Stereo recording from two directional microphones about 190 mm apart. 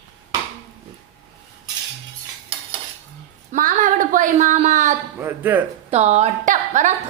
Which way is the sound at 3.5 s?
45° right (ahead or behind).